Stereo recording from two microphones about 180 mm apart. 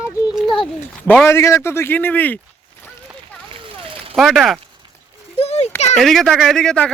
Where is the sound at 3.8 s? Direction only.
30° right (ahead or behind).